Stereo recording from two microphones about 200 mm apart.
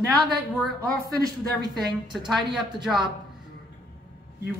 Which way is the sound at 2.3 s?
Centre (ahead or behind).